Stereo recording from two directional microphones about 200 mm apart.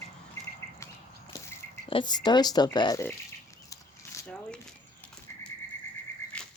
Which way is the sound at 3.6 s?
15° left (ahead or behind).